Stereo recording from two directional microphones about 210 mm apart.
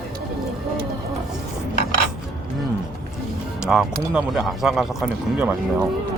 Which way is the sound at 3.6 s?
5° right (ahead or behind).